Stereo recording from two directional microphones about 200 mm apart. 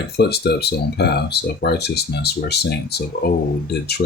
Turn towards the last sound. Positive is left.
turn(degrees=55)  # may be behind; listen again after turning